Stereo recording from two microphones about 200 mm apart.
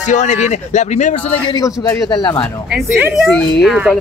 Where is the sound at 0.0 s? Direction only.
35° left (ahead or behind).